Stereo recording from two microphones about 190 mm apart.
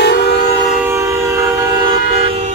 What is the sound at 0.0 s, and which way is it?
Vehicle, 60° left (ahead or behind).